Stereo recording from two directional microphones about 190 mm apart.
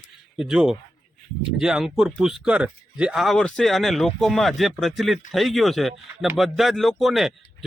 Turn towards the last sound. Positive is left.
turn(degrees=0)  # may be behind; listen again after turning